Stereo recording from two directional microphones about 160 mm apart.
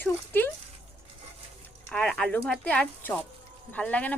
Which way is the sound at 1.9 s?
5° left (ahead or behind).